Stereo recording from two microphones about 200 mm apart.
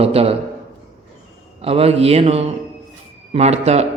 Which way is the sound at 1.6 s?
30° right (ahead or behind).